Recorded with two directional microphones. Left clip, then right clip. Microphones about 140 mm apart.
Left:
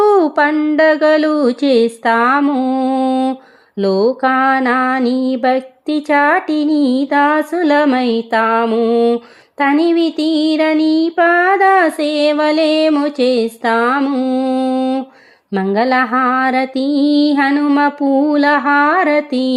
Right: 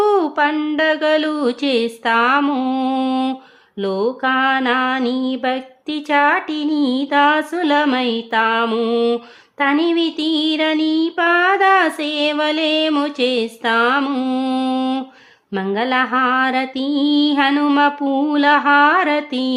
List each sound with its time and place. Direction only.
0.0 s a sound: 40° left (ahead or behind)
0.5 s music: 30° left (ahead or behind)
0.8 s speech: 45° left (ahead or behind)
2.4 s music: 30° left (ahead or behind)
3.8 s speech: 45° left (ahead or behind)
7.9 s music: 45° left (ahead or behind); by 9.2 s 25° left (ahead or behind)
9.6 s speech: 40° left (ahead or behind)
12.9 s music: 35° left (ahead or behind)
15.5 s music: 40° left (ahead or behind)